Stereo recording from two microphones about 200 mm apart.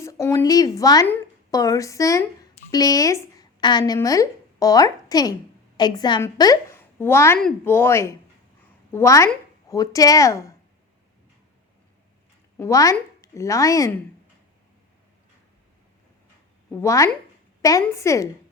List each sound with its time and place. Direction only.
0.0 s speech: 15° left (ahead or behind)
12.5 s speech: 15° left (ahead or behind)
16.8 s speech: 15° left (ahead or behind)